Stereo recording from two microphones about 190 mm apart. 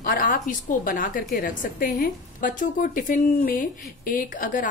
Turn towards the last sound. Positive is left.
turn(degrees=45)  # may be behind; listen again after turning